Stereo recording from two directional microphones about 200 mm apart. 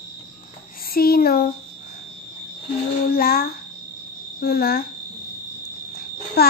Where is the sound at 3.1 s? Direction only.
50° left (ahead or behind).